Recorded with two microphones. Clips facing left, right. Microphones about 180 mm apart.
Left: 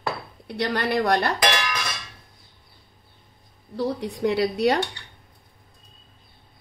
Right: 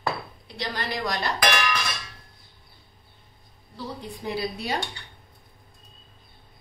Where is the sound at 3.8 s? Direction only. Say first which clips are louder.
Left 10 dB; 75° left (ahead or behind).